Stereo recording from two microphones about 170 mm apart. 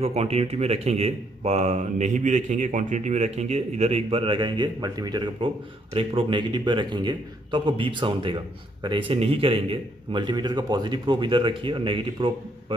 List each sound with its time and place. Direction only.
0.0 s a man's voice: 35° right (ahead or behind)